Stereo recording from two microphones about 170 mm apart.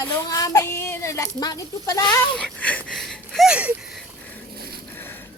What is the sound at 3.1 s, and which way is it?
Wheeze, centre (ahead or behind).